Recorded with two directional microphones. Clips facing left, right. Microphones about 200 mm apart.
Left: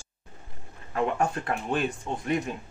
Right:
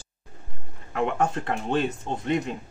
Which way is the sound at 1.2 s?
25° right (ahead or behind).